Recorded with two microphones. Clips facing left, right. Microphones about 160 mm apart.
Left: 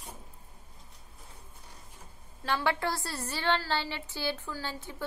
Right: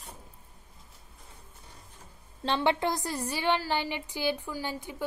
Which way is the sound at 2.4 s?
25° right (ahead or behind).